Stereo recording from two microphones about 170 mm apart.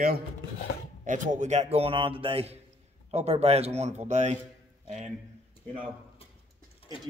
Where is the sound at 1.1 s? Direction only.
45° right (ahead or behind).